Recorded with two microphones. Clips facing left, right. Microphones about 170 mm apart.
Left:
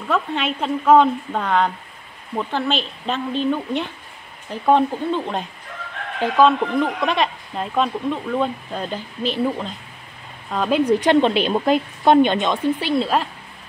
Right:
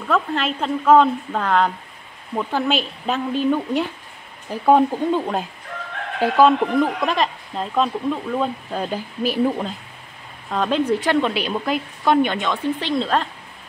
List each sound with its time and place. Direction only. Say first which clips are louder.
0.1 s speech: right 1 dB; centre (ahead or behind)
7.0 s speech: even; centre (ahead or behind)
10.5 s speech: left 1 dB; centre (ahead or behind)
10.8 s speech: left 5 dB; 15° left (ahead or behind)
12.7 s speech: left 1 dB; 10° left (ahead or behind)